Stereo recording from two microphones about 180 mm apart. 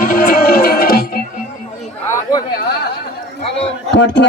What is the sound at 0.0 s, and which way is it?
Music, 50° left (ahead or behind).